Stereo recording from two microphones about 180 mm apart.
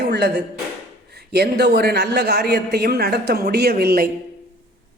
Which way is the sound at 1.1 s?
65° right (ahead or behind).